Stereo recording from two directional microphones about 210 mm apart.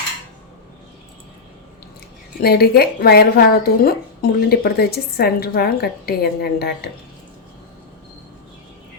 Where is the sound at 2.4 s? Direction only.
50° left (ahead or behind).